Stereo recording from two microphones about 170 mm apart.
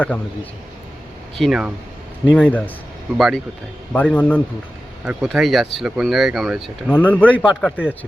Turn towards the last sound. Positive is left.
turn(degrees=5)  # may be behind; listen again after turning